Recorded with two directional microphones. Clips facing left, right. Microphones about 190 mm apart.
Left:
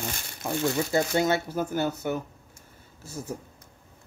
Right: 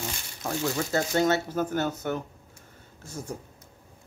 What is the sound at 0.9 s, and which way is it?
Speech, 10° left (ahead or behind).